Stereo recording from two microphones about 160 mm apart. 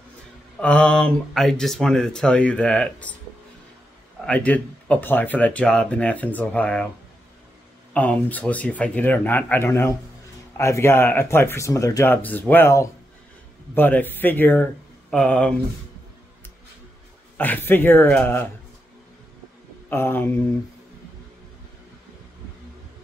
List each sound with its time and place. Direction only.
0.6 s speech: 5° left (ahead or behind)
4.3 s speech: 10° left (ahead or behind)
7.9 s speech: 10° left (ahead or behind)
17.4 s speech: 10° left (ahead or behind)
19.9 s speech: 15° left (ahead or behind)